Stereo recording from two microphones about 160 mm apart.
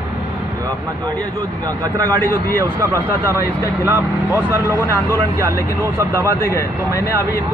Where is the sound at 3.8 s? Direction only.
10° right (ahead or behind).